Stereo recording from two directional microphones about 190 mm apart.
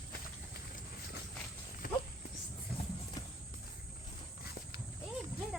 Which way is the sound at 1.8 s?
50° left (ahead or behind).